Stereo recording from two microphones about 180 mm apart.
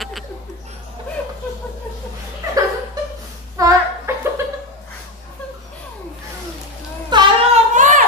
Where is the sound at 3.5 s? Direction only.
15° right (ahead or behind).